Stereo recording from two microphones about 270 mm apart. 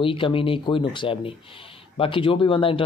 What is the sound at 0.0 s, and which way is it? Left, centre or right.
Speech, centre.